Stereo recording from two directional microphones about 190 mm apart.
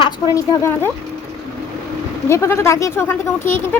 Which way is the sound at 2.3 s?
15° left (ahead or behind).